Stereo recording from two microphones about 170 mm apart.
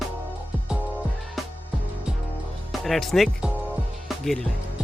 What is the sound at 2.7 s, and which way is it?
Speech, centre (ahead or behind).